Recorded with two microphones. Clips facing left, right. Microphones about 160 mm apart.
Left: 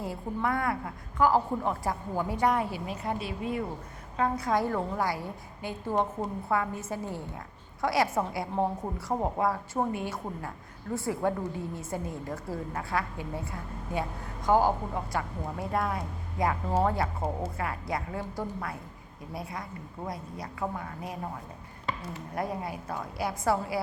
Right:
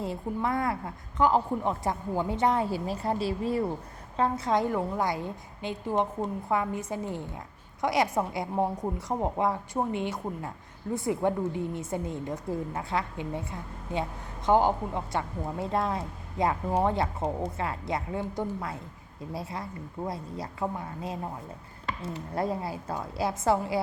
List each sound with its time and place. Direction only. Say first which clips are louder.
0.0 s a woman's voice: right 1 dB; 25° right (ahead or behind)
22.4 s a woman's voice: right 3 dB; 30° right (ahead or behind)